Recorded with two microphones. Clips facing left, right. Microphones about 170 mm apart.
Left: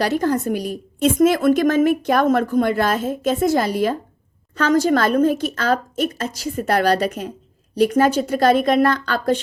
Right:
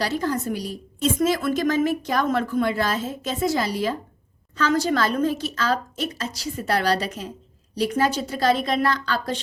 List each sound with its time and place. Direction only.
0.0 s a woman's voice: 55° left (ahead or behind)